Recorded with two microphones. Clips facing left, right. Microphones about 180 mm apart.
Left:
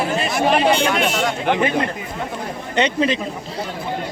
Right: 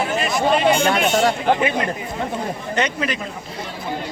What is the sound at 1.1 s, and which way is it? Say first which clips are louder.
Speech: right 4 dB; 35° right (ahead or behind).